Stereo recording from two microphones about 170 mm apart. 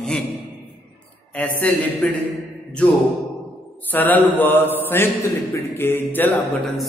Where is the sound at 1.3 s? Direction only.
10° left (ahead or behind).